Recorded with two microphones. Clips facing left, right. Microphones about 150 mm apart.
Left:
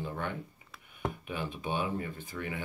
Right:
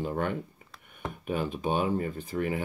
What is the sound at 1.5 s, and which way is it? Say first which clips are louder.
Speech: right 5 dB; 40° right (ahead or behind).